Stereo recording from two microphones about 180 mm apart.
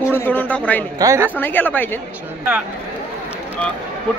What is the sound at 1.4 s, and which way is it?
Speech, 10° left (ahead or behind).